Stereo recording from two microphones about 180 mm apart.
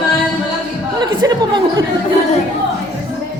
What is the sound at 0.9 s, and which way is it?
Speech, 25° right (ahead or behind).